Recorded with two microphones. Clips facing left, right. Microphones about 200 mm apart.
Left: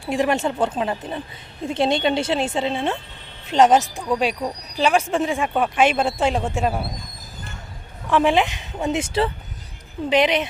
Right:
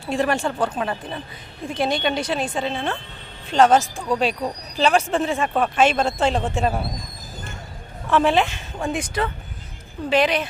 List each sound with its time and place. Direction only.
0.0 s a woman's voice: 15° left (ahead or behind)
8.1 s a woman's voice: 15° left (ahead or behind)